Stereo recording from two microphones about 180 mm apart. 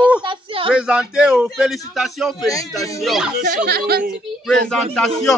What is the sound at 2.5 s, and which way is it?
Music, 20° left (ahead or behind).